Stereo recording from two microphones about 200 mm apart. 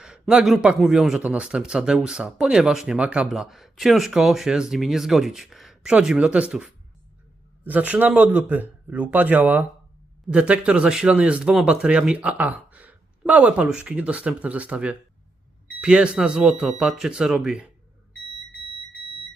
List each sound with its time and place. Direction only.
0.0 s a man's voice: 5° right (ahead or behind)